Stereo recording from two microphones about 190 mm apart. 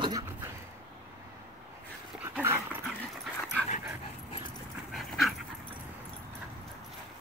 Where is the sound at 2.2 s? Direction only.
15° right (ahead or behind).